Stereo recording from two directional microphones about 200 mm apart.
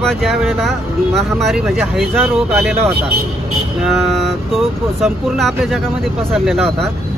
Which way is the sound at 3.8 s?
Centre (ahead or behind).